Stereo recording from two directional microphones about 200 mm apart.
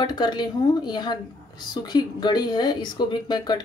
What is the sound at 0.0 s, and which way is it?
A woman's voice, 20° left (ahead or behind).